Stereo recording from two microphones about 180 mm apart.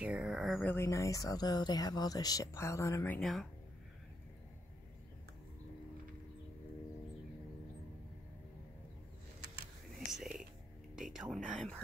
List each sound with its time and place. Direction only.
0.0 s speech: 5° right (ahead or behind)
0.6 s speech: 10° left (ahead or behind)
9.9 s whispering: centre (ahead or behind)
11.1 s speech: centre (ahead or behind)